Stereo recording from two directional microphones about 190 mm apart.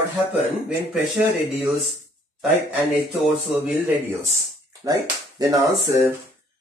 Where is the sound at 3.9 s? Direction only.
15° right (ahead or behind).